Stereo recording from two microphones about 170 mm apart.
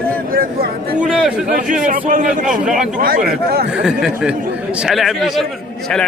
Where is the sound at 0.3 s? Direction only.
60° right (ahead or behind).